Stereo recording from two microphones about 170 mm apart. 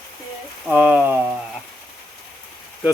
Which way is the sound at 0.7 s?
10° right (ahead or behind).